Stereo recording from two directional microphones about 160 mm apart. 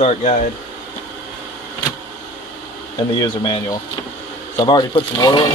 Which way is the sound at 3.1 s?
30° left (ahead or behind).